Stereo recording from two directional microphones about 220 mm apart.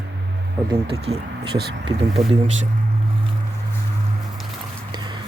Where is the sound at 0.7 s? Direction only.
25° right (ahead or behind).